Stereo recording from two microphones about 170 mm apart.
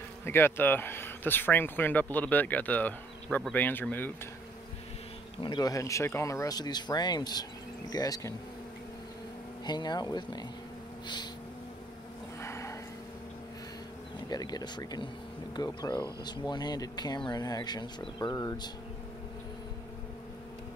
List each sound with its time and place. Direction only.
0.2 s speech: 15° left (ahead or behind)
5.4 s speech: 25° left (ahead or behind)
9.7 s speech: 25° left (ahead or behind)
12.4 s a sound: 15° left (ahead or behind)
14.3 s speech: 25° left (ahead or behind)